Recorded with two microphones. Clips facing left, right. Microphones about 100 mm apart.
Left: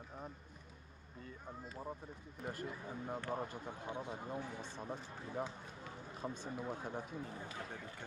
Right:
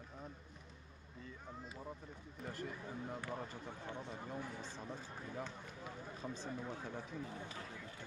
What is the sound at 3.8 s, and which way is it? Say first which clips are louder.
Speech: left 4 dB; 15° left (ahead or behind).